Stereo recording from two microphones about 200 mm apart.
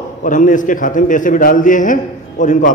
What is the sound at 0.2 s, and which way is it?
A man's voice, 40° left (ahead or behind).